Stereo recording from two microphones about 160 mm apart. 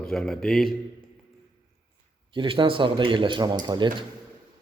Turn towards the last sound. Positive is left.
turn(degrees=-30)  # may be behind; listen again after turning